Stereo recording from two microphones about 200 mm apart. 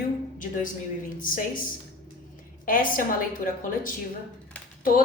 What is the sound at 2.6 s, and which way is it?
A woman's voice, 45° left (ahead or behind).